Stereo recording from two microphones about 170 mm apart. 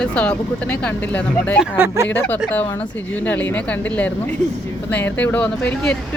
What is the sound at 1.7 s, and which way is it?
Speech, 15° right (ahead or behind).